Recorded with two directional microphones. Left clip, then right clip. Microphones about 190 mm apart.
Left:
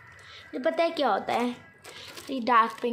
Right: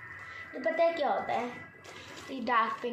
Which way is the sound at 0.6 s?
45° left (ahead or behind).